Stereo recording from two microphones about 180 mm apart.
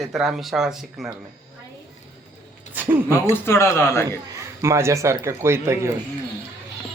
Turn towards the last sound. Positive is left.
turn(degrees=-15)  # may be behind; listen again after turning